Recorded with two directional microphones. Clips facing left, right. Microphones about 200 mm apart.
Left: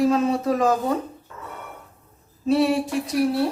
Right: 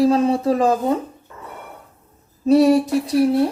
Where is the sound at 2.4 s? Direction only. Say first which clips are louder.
Right 6 dB; 40° right (ahead or behind).